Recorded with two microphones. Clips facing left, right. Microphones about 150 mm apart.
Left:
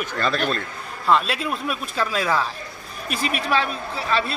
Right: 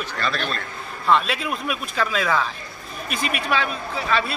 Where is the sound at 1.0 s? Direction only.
Centre (ahead or behind).